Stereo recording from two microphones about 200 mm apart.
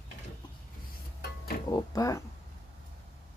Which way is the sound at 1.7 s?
15° left (ahead or behind).